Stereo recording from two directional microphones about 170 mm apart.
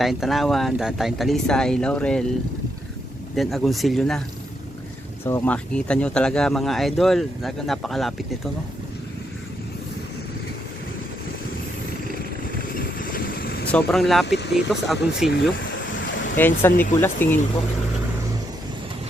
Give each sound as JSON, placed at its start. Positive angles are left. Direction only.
{"t": 0.0, "sound": "speech", "side_deg": 0}
{"t": 3.3, "sound": "speech", "side_deg": 0}
{"t": 5.2, "sound": "speech", "side_deg": 10}
{"t": 12.7, "sound": "vehicle", "side_deg": 60}
{"t": 13.7, "sound": "speech", "side_deg": 5}
{"t": 14.3, "sound": "speech", "side_deg": 85}
{"t": 14.5, "sound": "speech", "side_deg": 0}
{"t": 16.4, "sound": "speech", "side_deg": 10}